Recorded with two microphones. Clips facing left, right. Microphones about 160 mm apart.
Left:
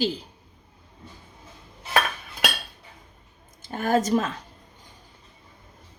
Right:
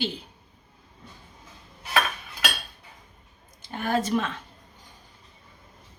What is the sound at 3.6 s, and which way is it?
Speech, 45° left (ahead or behind).